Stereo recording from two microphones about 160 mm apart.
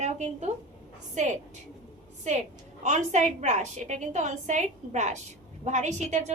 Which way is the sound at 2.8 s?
50° right (ahead or behind).